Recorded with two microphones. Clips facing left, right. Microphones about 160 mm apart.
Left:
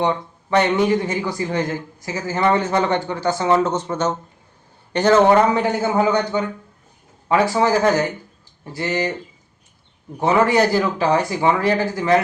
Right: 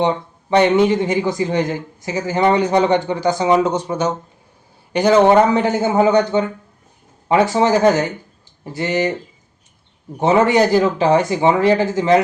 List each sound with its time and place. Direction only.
0.5 s speech: 20° right (ahead or behind)
10.2 s speech: 20° right (ahead or behind)